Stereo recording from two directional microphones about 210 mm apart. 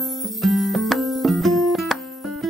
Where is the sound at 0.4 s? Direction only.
Centre (ahead or behind).